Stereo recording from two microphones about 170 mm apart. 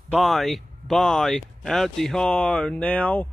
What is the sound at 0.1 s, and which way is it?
A man's voice, centre (ahead or behind).